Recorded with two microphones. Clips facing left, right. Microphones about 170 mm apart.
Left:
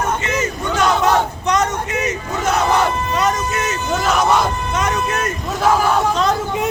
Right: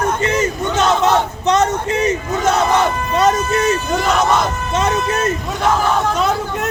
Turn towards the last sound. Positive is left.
turn(degrees=10)  # may be behind; listen again after turning